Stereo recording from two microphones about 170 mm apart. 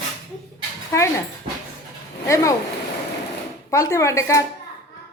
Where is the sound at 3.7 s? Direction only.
20° left (ahead or behind).